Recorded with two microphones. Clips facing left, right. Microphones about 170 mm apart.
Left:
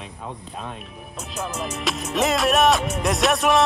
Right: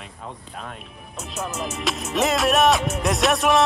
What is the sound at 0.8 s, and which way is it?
Speech, centre (ahead or behind).